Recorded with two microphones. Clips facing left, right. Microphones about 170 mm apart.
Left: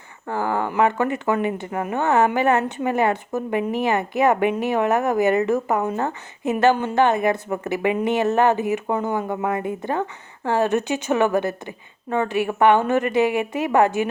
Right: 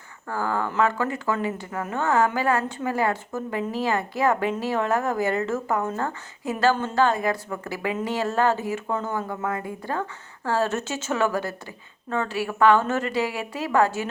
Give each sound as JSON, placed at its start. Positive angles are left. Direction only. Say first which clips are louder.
{"t": 0.3, "sound": "speech", "louder": "left 3 dB", "side_deg": 20}